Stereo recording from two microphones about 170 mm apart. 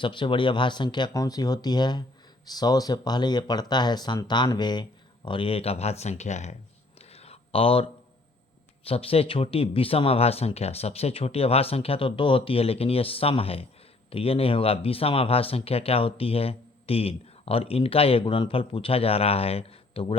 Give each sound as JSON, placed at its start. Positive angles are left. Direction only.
{"t": 0.0, "sound": "speech", "side_deg": 30}
{"t": 7.1, "sound": "a sound", "side_deg": 35}
{"t": 8.9, "sound": "speech", "side_deg": 35}